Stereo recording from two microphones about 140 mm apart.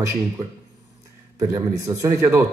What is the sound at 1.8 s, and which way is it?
Speech, 25° right (ahead or behind).